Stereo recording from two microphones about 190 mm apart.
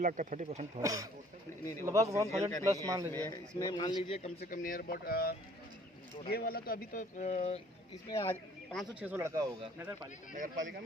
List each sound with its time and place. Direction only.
0.0 s speech: 45° right (ahead or behind)
0.8 s speech: 15° right (ahead or behind)
3.1 s speech: 10° left (ahead or behind)
4.0 s a man's voice: 30° left (ahead or behind)
4.4 s speech: 45° left (ahead or behind)
8.1 s speech: 15° left (ahead or behind)
8.7 s speech: 5° right (ahead or behind)
10.3 s speech: 40° right (ahead or behind)